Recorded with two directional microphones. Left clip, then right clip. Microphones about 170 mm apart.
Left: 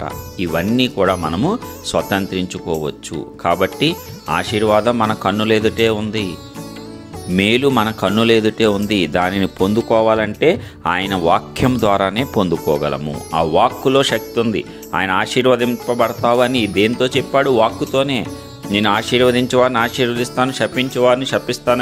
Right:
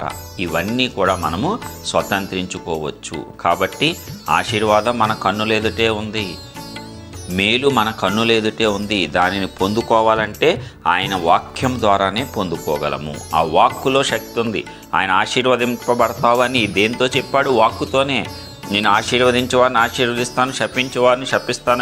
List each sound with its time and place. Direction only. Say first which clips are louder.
0.0 s speech: even; 40° left (ahead or behind)
7.3 s speech: left 1 dB; 45° left (ahead or behind)
15.9 s speech: right 1 dB; 25° left (ahead or behind)